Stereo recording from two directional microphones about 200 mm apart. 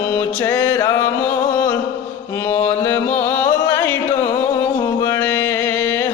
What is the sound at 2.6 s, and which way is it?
Music, 10° left (ahead or behind).